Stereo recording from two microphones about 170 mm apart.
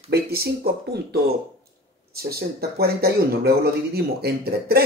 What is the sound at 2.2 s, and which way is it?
Speech, 65° right (ahead or behind).